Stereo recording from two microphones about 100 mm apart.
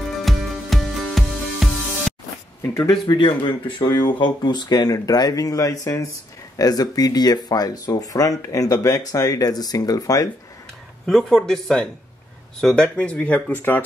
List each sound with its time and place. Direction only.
0.2 s music: centre (ahead or behind)
2.6 s speech: 25° left (ahead or behind)
2.9 s speech: 50° left (ahead or behind)
11.1 s speech: 5° left (ahead or behind); by 13.8 s 20° left (ahead or behind)